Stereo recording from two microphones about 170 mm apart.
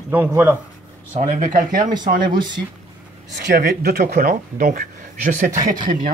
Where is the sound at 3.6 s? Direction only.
65° right (ahead or behind).